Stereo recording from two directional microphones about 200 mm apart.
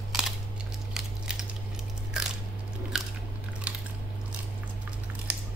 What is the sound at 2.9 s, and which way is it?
Biting, centre (ahead or behind).